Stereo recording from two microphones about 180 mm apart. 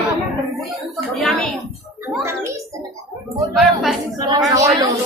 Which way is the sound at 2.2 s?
15° right (ahead or behind).